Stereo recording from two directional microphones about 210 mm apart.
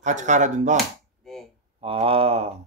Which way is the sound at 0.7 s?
Centre (ahead or behind).